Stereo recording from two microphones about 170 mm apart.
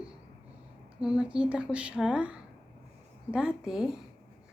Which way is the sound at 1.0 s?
5° right (ahead or behind).